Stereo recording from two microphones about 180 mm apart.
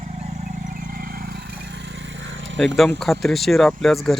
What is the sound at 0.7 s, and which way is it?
Vehicle, 55° right (ahead or behind).